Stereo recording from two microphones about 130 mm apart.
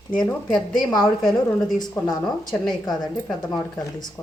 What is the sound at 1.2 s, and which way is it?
A woman's voice, 5° left (ahead or behind).